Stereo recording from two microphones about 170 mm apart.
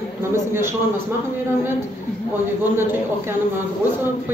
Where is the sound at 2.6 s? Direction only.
10° right (ahead or behind).